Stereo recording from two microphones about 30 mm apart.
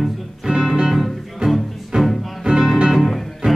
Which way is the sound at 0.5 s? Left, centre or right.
Right.